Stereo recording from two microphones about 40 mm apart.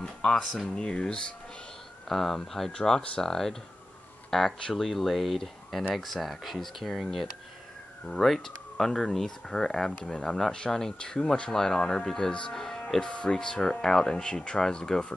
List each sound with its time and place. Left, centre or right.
0.0 s speech: centre
2.0 s speech: centre
12.5 s music: centre
13.0 s speech: left